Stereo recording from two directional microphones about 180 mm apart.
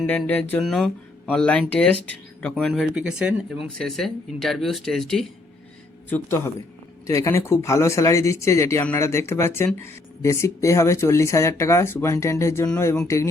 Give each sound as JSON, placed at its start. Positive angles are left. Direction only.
{"t": 0.0, "sound": "speech", "side_deg": 5}
{"t": 6.1, "sound": "speech", "side_deg": 10}